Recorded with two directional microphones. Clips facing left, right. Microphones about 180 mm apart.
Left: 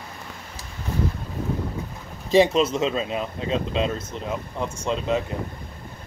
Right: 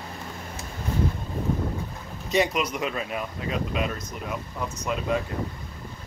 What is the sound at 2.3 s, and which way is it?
Speech, 30° left (ahead or behind).